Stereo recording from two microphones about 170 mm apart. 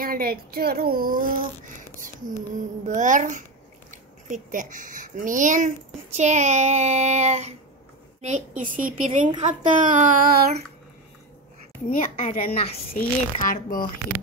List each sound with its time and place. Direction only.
0.0 s speech: 60° right (ahead or behind)
2.5 s a child's voice: 50° right (ahead or behind)
11.9 s a woman's voice: 45° left (ahead or behind)
12.9 s speech: 55° left (ahead or behind)